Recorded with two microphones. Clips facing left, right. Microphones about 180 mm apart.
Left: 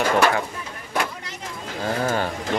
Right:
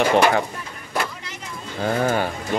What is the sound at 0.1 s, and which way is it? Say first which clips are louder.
Speech: right 1 dB; 20° right (ahead or behind).